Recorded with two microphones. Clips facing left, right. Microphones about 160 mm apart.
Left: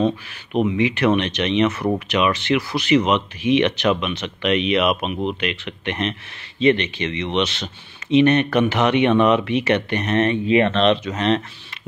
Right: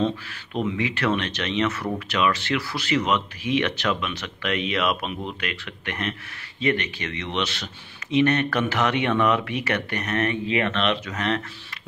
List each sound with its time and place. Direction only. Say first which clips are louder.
0.0 s speech: left 4 dB; 20° left (ahead or behind)